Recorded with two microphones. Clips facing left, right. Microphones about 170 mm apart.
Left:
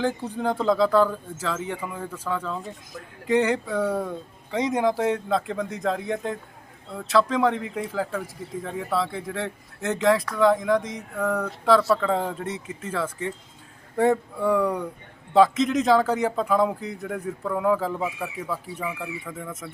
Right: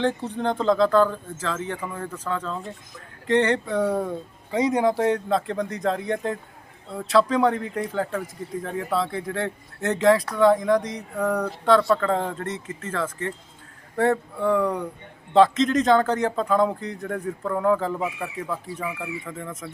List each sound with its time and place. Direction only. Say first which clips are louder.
0.0 s speech: right 1 dB; 5° left (ahead or behind)
3.8 s speech: right 2 dB; 5° right (ahead or behind)